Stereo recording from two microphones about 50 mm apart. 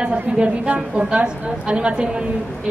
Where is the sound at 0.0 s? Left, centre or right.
Right.